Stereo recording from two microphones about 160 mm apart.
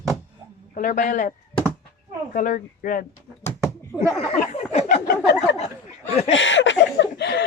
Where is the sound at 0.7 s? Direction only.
55° left (ahead or behind).